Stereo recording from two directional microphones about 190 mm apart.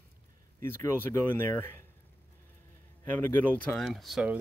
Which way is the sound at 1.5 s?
10° left (ahead or behind).